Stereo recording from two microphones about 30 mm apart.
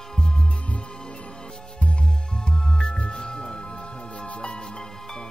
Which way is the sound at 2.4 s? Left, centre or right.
Left.